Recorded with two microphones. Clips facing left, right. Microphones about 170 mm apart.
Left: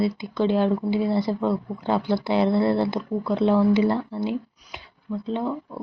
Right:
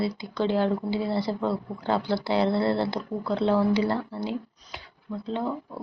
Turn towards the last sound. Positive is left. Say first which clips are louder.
# left 3 dB
turn(degrees=15)  # may be behind; listen again after turning